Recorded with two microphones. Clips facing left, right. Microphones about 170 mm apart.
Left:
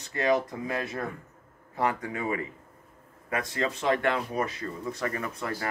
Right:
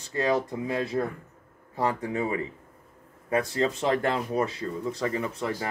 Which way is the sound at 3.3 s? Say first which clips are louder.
Right 5 dB; 30° right (ahead or behind).